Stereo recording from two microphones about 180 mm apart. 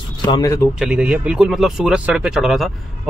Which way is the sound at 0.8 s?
5° right (ahead or behind).